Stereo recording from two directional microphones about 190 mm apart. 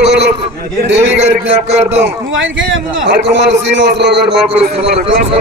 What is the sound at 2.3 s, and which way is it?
A man's voice, 85° right.